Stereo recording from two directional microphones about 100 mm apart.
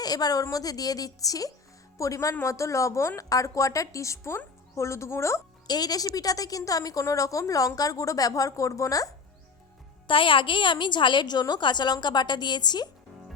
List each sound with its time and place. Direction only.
0.0 s a woman's voice: 40° left (ahead or behind)
5.6 s a woman's voice: 40° left (ahead or behind)
10.1 s a woman's voice: 60° left (ahead or behind)